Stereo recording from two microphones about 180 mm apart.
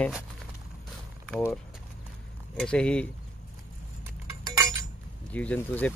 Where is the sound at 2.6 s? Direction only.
5° left (ahead or behind).